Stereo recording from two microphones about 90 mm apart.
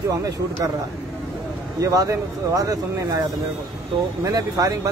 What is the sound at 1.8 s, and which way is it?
Speech, 40° right (ahead or behind).